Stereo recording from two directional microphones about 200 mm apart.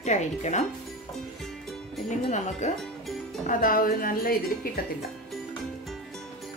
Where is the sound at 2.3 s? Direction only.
35° left (ahead or behind).